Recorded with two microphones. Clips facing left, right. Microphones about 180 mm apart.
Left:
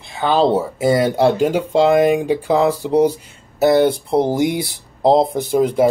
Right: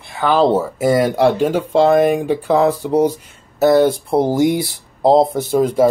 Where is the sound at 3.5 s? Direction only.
15° left (ahead or behind).